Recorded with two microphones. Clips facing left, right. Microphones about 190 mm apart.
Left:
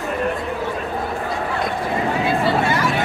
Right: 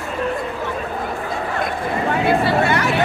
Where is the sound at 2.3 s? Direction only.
65° right (ahead or behind).